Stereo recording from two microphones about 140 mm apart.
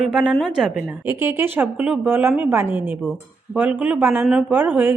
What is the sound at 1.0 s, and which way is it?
A woman's voice, 15° right (ahead or behind).